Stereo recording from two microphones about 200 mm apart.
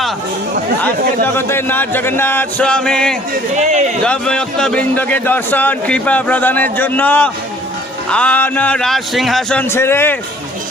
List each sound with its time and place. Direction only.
1.4 s speech: 10° left (ahead or behind)
3.5 s speech: 35° right (ahead or behind)
4.0 s speech: 5° left (ahead or behind)